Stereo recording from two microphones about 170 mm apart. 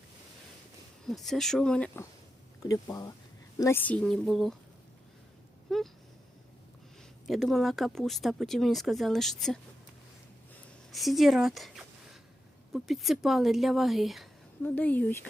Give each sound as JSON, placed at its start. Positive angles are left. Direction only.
{"t": 1.0, "sound": "speech", "side_deg": 0}
{"t": 2.6, "sound": "speech", "side_deg": 20}
{"t": 5.7, "sound": "a sound", "side_deg": 0}
{"t": 7.3, "sound": "speech", "side_deg": 0}
{"t": 10.9, "sound": "speech", "side_deg": 0}
{"t": 14.6, "sound": "speech", "side_deg": 10}